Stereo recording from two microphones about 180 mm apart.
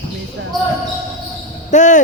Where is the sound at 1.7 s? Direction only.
45° left (ahead or behind).